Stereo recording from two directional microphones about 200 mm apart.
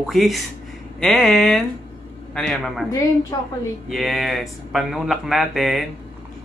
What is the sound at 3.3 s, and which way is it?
Speech, 20° left (ahead or behind).